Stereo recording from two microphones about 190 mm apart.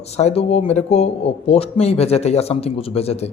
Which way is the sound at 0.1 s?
35° left (ahead or behind).